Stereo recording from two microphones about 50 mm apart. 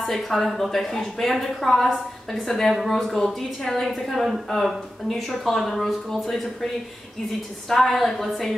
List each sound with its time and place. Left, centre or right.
0.0 s a woman's voice: centre
7.7 s a woman's voice: centre